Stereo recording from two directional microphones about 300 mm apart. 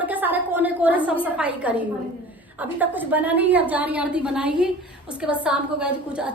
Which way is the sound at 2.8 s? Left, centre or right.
Centre.